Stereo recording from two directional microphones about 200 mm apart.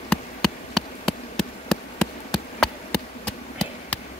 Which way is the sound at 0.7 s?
Centre (ahead or behind).